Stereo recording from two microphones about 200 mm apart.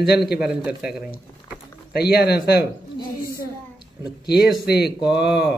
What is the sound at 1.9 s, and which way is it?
Speech, 50° left (ahead or behind).